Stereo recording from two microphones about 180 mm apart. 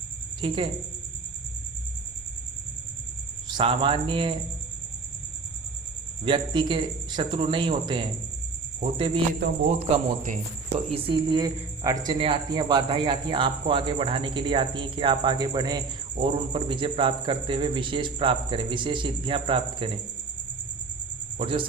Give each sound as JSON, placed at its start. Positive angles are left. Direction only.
{"t": 0.4, "sound": "speech", "side_deg": -30}
{"t": 3.5, "sound": "speech", "side_deg": -30}
{"t": 6.2, "sound": "speech", "side_deg": -25}
{"t": 9.6, "sound": "speech", "side_deg": -40}
{"t": 10.9, "sound": "speech", "side_deg": -30}
{"t": 21.3, "sound": "speech", "side_deg": -30}